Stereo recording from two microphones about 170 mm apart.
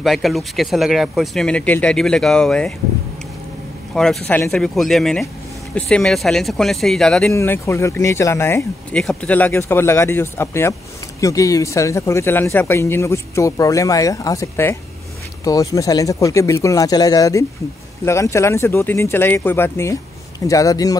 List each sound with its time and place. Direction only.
0.0 s speech: centre (ahead or behind)
3.9 s speech: 5° left (ahead or behind)
7.3 s speech: 15° left (ahead or behind)